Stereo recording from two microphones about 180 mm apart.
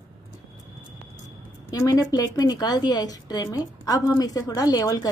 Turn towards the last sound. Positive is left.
turn(degrees=20)  # may be behind; listen again after turning